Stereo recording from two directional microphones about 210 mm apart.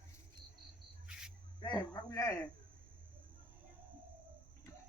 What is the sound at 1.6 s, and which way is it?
Speech, 20° left (ahead or behind).